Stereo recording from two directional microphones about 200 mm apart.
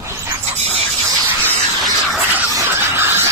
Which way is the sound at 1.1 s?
10° right (ahead or behind).